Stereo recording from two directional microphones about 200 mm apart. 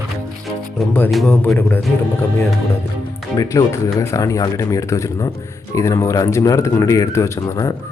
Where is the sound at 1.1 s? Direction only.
Centre (ahead or behind).